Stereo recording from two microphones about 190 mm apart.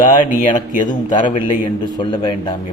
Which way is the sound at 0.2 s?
45° left (ahead or behind).